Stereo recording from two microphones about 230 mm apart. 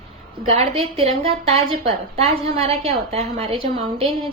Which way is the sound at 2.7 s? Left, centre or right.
Right.